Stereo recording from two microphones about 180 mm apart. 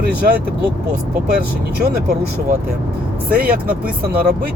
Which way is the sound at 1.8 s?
60° right (ahead or behind).